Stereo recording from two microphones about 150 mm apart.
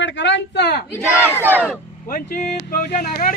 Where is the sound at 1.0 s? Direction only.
10° right (ahead or behind).